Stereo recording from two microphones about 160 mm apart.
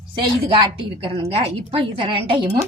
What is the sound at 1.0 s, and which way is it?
A woman's voice, 40° right (ahead or behind).